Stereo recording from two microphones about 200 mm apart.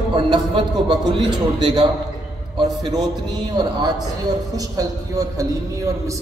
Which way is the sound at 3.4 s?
20° right (ahead or behind).